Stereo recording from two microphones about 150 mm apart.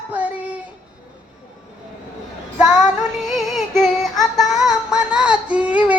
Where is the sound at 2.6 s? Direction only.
5° right (ahead or behind).